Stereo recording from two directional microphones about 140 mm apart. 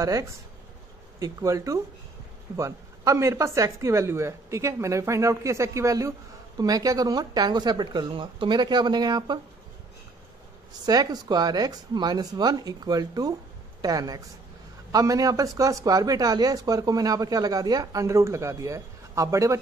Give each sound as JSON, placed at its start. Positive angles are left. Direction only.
{"t": 0.0, "sound": "speech", "side_deg": -20}
{"t": 10.9, "sound": "speech", "side_deg": -30}